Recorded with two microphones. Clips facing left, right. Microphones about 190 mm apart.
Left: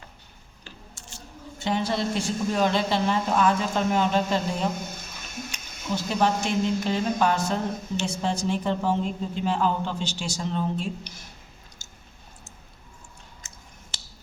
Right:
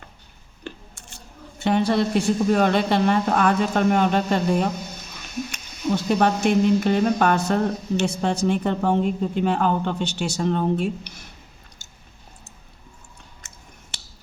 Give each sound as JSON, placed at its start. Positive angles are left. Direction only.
{"t": 0.6, "sound": "speech", "side_deg": -60}
{"t": 13.4, "sound": "chewing", "side_deg": -60}